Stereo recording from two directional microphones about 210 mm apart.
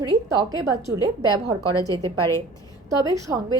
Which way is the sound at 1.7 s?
15° left (ahead or behind).